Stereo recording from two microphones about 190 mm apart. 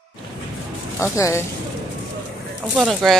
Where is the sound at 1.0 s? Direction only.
15° left (ahead or behind).